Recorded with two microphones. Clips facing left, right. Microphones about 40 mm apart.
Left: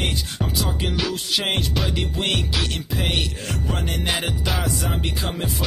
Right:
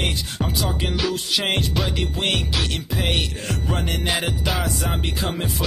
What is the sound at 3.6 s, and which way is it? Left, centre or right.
Music, centre.